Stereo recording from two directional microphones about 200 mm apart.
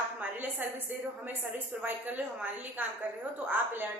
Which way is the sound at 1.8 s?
10° right (ahead or behind).